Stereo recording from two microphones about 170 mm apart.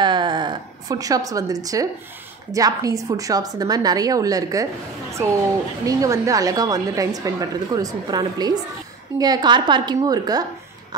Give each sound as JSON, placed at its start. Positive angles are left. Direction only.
{"t": 0.0, "sound": "a sound", "side_deg": -25}
{"t": 2.5, "sound": "a woman's voice", "side_deg": -20}
{"t": 5.9, "sound": "a woman's voice", "side_deg": -20}